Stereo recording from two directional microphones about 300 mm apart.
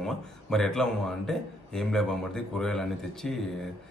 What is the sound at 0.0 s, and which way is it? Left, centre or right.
A man's voice, centre.